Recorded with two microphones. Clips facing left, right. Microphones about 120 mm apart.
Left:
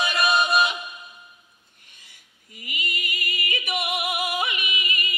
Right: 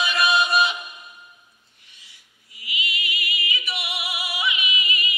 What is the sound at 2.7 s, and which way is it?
Music, 50° left (ahead or behind).